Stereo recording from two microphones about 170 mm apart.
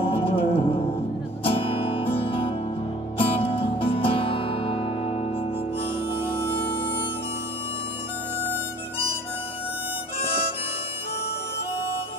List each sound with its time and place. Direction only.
0.0 s music: 35° left (ahead or behind)